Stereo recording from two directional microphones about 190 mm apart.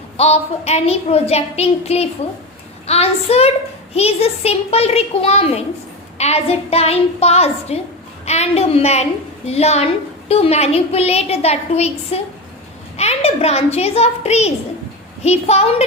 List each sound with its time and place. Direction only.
0.2 s a woman's voice: 35° left (ahead or behind)